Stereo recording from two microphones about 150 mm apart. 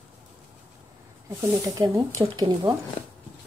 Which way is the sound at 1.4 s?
20° right (ahead or behind).